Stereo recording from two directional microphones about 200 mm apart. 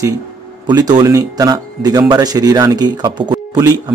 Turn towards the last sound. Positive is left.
turn(degrees=-20)  # may be behind; listen again after turning